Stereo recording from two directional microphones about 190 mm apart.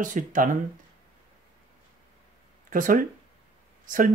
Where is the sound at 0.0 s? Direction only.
45° right (ahead or behind).